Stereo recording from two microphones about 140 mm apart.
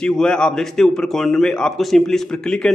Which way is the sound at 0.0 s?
5° left (ahead or behind).